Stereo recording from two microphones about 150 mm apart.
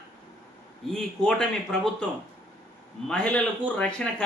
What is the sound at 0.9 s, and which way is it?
Speech, 5° left (ahead or behind).